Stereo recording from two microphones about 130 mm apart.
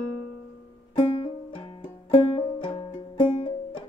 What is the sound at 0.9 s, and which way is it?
Music, 50° left (ahead or behind).